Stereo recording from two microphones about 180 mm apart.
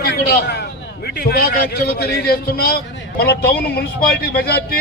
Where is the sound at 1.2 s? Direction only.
60° left (ahead or behind).